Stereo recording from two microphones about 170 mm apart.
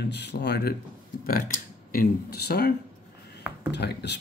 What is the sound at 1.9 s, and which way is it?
Speech, 65° left (ahead or behind).